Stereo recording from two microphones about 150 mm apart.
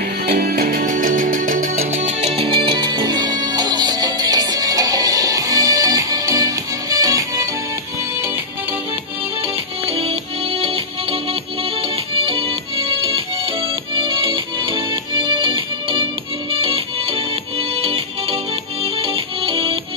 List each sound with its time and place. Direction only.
0.3 s music: 80° right
0.7 s music: 60° right (ahead or behind)
2.0 s music: 40° right (ahead or behind); by 7.4 s 25° right (ahead or behind)
9.8 s music: 40° right (ahead or behind)
12.1 s music: 40° right (ahead or behind)